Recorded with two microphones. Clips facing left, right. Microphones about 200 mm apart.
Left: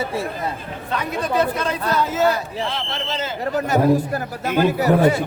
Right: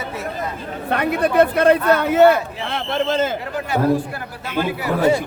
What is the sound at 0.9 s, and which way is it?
Speech, 60° right (ahead or behind).